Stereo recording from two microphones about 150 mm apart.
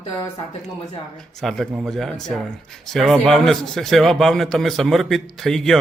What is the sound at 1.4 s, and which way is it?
A man's voice, centre (ahead or behind).